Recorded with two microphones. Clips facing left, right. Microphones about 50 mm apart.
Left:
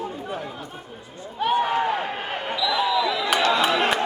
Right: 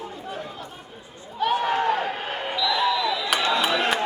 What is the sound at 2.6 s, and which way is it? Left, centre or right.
Basketball bounce, centre.